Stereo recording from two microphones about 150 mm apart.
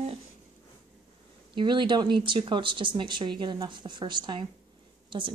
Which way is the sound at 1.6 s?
30° right (ahead or behind).